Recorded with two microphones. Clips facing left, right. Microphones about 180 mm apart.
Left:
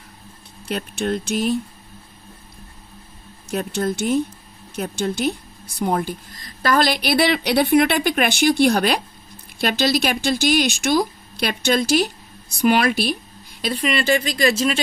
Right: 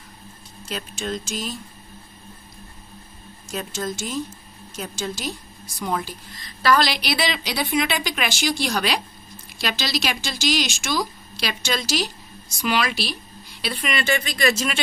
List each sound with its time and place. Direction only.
0.6 s speech: 60° left (ahead or behind)
3.5 s speech: 60° left (ahead or behind)
13.6 s speech: 40° left (ahead or behind)